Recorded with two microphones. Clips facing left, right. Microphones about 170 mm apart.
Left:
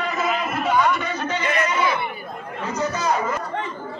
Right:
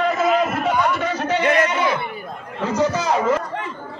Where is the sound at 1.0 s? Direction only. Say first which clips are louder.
Right 5 dB; 80° right.